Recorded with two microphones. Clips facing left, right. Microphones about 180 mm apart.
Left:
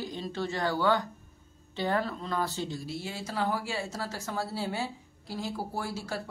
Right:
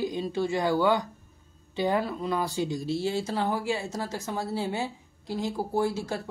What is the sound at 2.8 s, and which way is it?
Speech, 30° right (ahead or behind).